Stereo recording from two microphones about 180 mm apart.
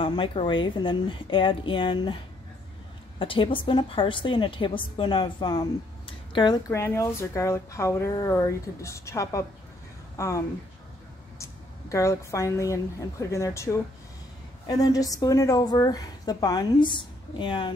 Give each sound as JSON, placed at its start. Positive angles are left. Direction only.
{"t": 0.0, "sound": "a woman's voice", "side_deg": 30}
{"t": 6.7, "sound": "a woman's voice", "side_deg": 15}